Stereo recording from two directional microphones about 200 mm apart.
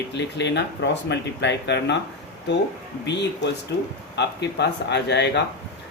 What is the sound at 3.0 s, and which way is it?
Speech, 60° left (ahead or behind).